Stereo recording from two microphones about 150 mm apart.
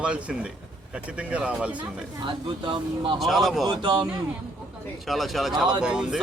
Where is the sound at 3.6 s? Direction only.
30° right (ahead or behind).